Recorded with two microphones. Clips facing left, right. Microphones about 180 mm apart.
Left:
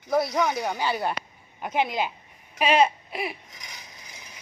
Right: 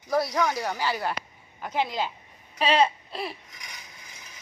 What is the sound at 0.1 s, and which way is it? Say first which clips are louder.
A woman's voice: left 1 dB; 20° left (ahead or behind).